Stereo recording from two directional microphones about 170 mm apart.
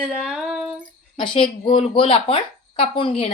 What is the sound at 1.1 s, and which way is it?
A woman's voice, 30° left (ahead or behind).